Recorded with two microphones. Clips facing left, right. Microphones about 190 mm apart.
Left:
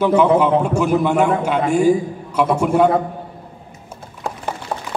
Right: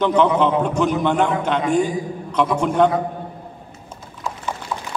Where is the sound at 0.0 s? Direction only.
10° left (ahead or behind).